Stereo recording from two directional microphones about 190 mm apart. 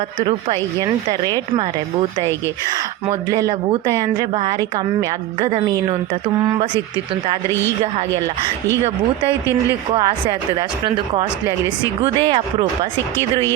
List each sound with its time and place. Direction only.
0.3 s speech: 25° right (ahead or behind)
3.1 s speech: 20° right (ahead or behind)
5.4 s speech: 30° right (ahead or behind)
9.9 s speech: 20° right (ahead or behind)